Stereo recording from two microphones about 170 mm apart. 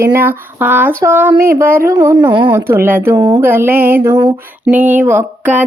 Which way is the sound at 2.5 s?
15° right (ahead or behind).